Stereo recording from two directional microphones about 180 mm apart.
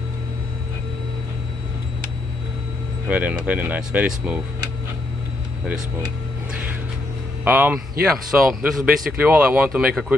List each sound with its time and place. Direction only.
3.1 s speech: 10° right (ahead or behind)
7.4 s a man's voice: 10° right (ahead or behind)